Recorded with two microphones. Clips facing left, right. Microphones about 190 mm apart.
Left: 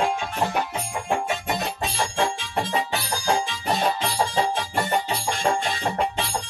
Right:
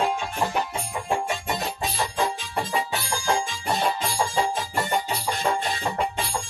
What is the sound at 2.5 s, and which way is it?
Music, 20° left (ahead or behind).